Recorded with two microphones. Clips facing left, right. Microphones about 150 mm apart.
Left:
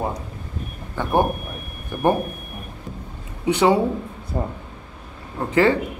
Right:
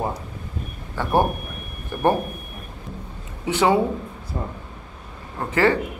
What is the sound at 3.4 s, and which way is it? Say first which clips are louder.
Speech: left 2 dB; 20° left (ahead or behind).